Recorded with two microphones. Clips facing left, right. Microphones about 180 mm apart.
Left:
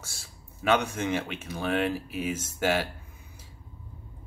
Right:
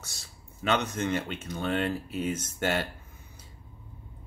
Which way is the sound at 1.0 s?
90° left.